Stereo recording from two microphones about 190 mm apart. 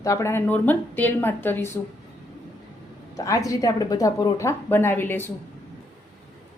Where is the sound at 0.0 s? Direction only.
15° left (ahead or behind).